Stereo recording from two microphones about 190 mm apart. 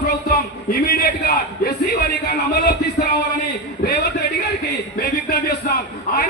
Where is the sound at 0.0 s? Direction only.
55° left (ahead or behind).